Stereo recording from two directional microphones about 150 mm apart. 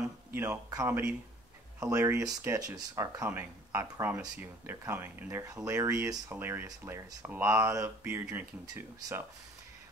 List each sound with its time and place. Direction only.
0.3 s speech: 15° right (ahead or behind)